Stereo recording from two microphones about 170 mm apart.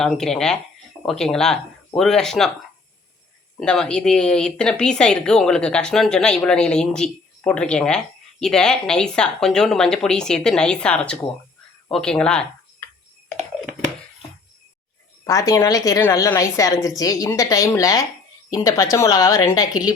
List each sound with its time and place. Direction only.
0.0 s speech: centre (ahead or behind)
3.6 s speech: 5° left (ahead or behind)
15.2 s a woman's voice: 20° left (ahead or behind)